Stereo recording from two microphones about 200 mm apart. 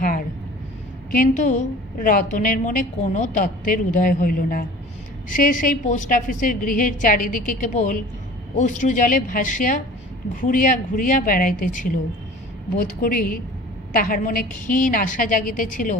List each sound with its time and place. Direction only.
1.1 s a woman's voice: 40° left (ahead or behind)